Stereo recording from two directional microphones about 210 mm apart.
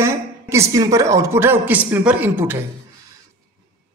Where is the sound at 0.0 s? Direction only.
15° right (ahead or behind).